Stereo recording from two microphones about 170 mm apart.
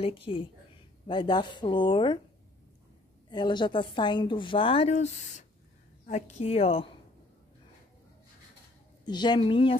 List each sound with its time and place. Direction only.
0.0 s a woman's voice: 30° left (ahead or behind)
3.3 s a woman's voice: 25° left (ahead or behind)
9.0 s a woman's voice: 25° left (ahead or behind)